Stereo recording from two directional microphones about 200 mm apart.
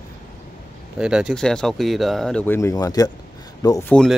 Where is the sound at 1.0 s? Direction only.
5° right (ahead or behind); by 3.9 s 15° left (ahead or behind).